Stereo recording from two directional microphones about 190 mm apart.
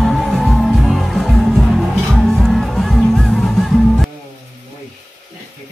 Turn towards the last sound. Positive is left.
turn(degrees=0)  # may be behind; listen again after turning